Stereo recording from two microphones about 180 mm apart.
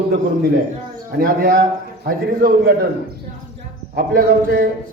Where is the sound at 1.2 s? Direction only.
55° right (ahead or behind).